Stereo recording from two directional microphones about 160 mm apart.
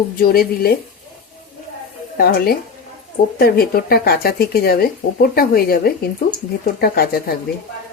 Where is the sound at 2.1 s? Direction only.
70° left (ahead or behind).